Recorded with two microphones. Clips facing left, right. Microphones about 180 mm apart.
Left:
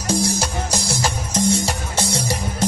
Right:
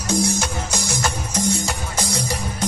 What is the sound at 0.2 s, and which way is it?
Music, 35° left (ahead or behind).